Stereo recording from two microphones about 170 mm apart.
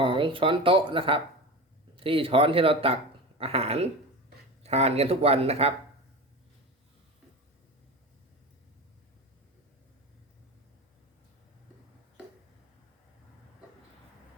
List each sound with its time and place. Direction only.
0.0 s speech: 30° right (ahead or behind)